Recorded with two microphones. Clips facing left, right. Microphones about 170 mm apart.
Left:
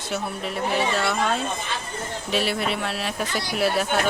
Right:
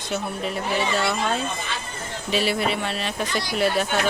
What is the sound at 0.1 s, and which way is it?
Speech, centre (ahead or behind).